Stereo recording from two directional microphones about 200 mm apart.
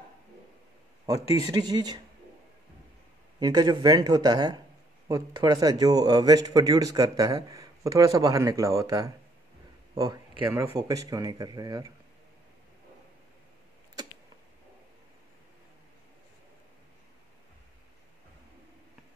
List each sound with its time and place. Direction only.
1.0 s a man's voice: 20° right (ahead or behind)
3.3 s a man's voice: 20° right (ahead or behind)